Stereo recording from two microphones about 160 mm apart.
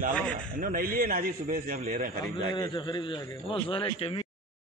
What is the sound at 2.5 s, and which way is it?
A man's voice, 30° left (ahead or behind).